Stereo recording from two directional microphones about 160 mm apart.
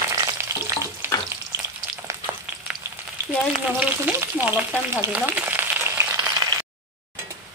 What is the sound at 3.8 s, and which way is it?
Frying, 15° right (ahead or behind).